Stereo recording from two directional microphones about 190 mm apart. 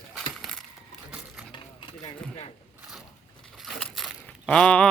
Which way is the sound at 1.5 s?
25° left (ahead or behind).